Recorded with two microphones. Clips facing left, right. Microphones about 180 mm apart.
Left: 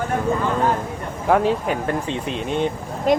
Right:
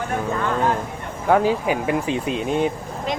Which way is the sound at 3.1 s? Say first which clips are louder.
Left 9 dB; 50° left (ahead or behind).